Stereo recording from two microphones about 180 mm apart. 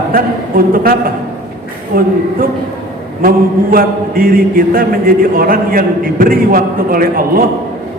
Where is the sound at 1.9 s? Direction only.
55° right (ahead or behind).